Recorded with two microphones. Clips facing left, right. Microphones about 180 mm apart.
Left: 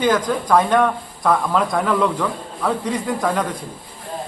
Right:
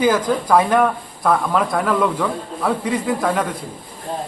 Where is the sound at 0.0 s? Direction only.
10° right (ahead or behind).